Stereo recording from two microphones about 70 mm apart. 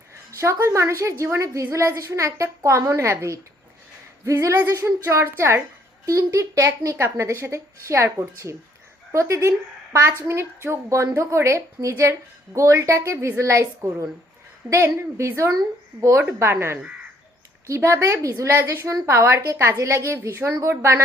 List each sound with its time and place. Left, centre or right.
0.3 s a woman's voice: right
6.1 s a woman's voice: right
18.0 s a woman's voice: right
20.1 s a woman's voice: right